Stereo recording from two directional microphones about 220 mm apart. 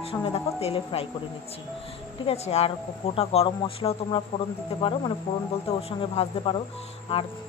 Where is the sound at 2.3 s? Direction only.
25° left (ahead or behind).